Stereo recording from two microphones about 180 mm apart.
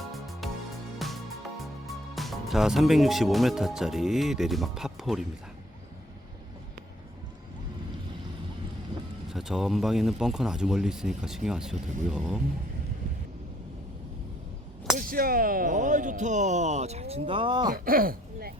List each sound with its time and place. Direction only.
0.1 s music: centre (ahead or behind)
2.1 s speech: centre (ahead or behind)
9.3 s speech: centre (ahead or behind)
14.9 s speech: 55° right (ahead or behind); by 17.7 s 25° right (ahead or behind)
17.7 s speech: 50° right (ahead or behind)